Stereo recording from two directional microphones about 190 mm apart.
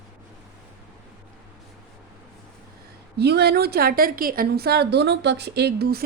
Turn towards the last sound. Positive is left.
turn(degrees=-55)  # may be behind; listen again after turning